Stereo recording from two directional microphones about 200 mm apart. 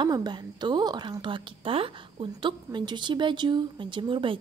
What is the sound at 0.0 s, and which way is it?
A woman's voice, 20° right (ahead or behind).